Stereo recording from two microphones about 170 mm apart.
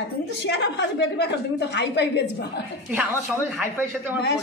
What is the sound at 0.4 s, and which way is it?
A woman's voice, 85° left.